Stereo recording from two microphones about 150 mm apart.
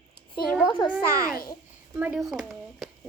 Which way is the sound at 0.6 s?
30° left (ahead or behind).